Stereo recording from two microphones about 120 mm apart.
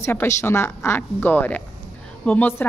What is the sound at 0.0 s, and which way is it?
A woman's voice, 20° left (ahead or behind).